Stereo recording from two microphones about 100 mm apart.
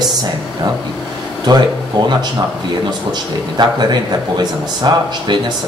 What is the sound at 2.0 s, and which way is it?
Speech, 45° right (ahead or behind).